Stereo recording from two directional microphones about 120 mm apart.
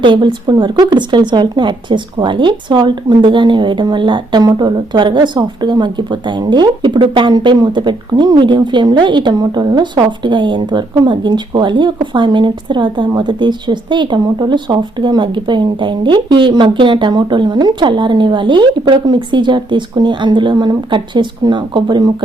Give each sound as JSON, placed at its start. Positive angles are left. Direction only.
{"t": 0.0, "sound": "speech", "side_deg": -40}